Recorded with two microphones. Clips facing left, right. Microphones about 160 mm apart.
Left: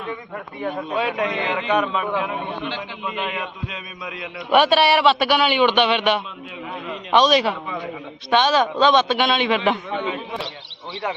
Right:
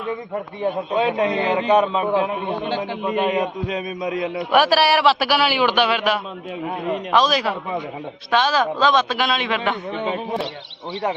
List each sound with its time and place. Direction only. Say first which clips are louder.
0.6 s a man's voice: right 3 dB; 30° right (ahead or behind)
4.5 s a man's voice: left 1 dB; centre (ahead or behind)
6.7 s a man's voice: right 7 dB; 45° right (ahead or behind)
7.1 s a man's voice: left 3 dB; centre (ahead or behind)
9.9 s a man's voice: right 2 dB; 35° right (ahead or behind)